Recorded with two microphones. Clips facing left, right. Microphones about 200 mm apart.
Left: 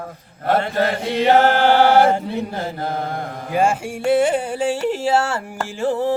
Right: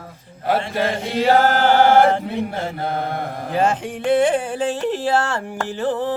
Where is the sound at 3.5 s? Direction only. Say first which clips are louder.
Left 1 dB; 10° left (ahead or behind).